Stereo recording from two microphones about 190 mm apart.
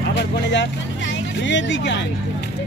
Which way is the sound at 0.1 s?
70° left (ahead or behind).